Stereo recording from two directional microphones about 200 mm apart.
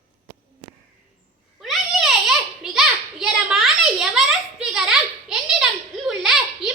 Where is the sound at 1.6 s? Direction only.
Centre (ahead or behind).